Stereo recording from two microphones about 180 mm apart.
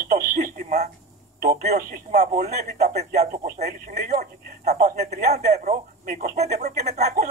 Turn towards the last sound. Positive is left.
turn(degrees=-40)  # may be behind; listen again after turning